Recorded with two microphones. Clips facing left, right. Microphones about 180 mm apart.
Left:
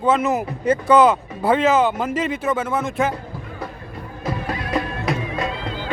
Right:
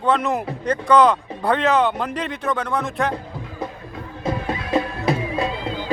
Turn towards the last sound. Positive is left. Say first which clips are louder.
# right 2 dB
turn(degrees=-30)  # may be behind; listen again after turning